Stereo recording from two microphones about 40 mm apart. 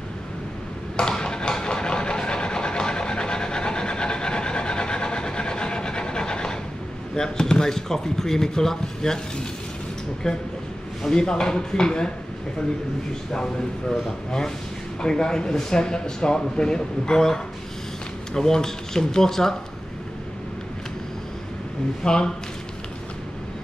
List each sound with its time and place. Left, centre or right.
0.9 s a sound: centre
7.2 s speech: centre
13.3 s speech: centre
22.0 s speech: centre